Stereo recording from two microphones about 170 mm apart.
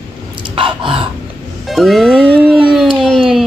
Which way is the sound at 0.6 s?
30° right (ahead or behind).